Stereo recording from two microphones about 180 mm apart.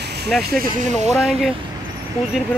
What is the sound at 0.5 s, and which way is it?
Speech, 50° right (ahead or behind).